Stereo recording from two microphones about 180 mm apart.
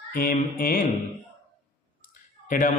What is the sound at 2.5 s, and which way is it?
Mantra, 45° left (ahead or behind).